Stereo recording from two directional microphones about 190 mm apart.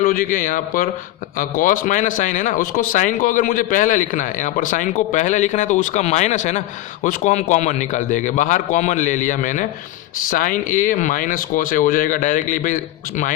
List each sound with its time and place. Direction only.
0.0 s a man's voice: 45° left (ahead or behind)